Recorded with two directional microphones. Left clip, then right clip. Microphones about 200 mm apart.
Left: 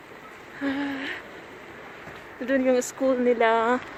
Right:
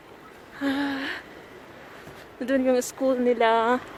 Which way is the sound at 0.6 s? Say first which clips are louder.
Right 2 dB; 20° right (ahead or behind).